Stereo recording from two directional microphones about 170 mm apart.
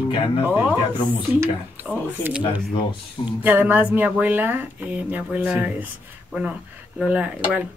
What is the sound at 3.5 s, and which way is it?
Speech, 10° right (ahead or behind).